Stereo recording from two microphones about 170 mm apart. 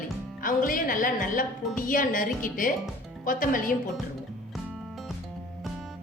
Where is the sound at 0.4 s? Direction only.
55° left (ahead or behind).